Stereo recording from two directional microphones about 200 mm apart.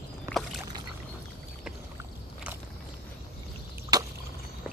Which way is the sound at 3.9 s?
20° right (ahead or behind).